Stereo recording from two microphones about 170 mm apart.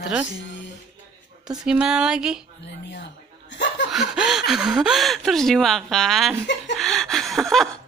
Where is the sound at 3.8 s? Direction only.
Centre (ahead or behind).